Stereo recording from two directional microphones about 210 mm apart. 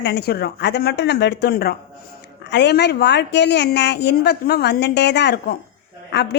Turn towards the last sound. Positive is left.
turn(degrees=50)  # may be behind; listen again after turning